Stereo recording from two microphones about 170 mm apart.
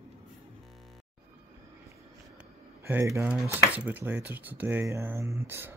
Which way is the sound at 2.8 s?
15° right (ahead or behind).